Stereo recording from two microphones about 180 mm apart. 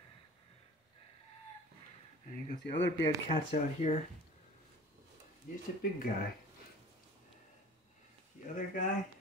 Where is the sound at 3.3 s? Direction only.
40° left (ahead or behind).